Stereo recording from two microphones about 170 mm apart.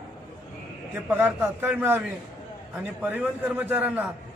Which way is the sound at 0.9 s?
15° right (ahead or behind).